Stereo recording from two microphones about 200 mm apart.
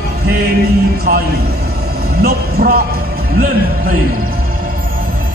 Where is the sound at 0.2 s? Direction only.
50° right (ahead or behind).